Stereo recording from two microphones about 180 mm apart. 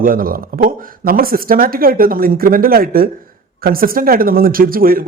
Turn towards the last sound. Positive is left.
turn(degrees=-55)  # may be behind; listen again after turning